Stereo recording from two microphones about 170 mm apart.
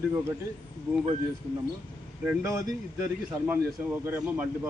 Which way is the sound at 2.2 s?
15° right (ahead or behind).